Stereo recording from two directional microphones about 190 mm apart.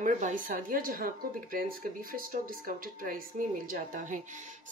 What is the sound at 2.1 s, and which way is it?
Speech, 45° right (ahead or behind).